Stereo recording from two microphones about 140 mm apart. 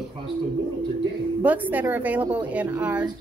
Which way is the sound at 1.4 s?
10° right (ahead or behind).